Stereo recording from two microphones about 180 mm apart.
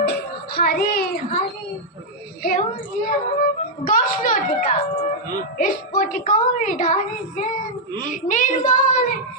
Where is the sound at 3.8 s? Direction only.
50° left (ahead or behind).